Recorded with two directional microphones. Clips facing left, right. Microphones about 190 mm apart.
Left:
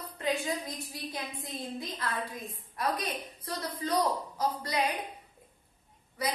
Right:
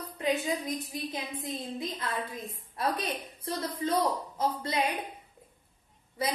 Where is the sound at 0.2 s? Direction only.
20° right (ahead or behind).